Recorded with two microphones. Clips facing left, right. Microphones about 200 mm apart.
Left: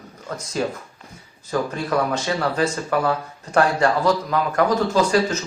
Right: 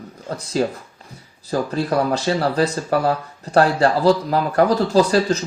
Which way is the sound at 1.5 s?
35° right (ahead or behind).